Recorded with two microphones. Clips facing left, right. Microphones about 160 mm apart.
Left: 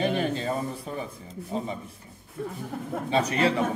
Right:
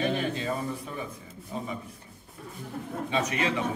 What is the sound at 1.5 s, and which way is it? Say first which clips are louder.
Speech: left 5 dB; 30° left (ahead or behind).